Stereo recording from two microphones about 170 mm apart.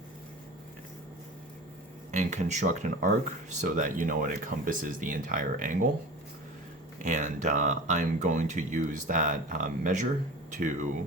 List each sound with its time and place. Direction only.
2.1 s speech: 45° right (ahead or behind)
7.0 s speech: 45° right (ahead or behind)